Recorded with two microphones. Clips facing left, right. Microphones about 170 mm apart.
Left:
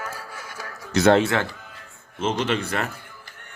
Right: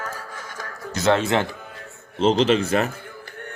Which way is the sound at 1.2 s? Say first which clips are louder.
Right 2 dB; 20° right (ahead or behind).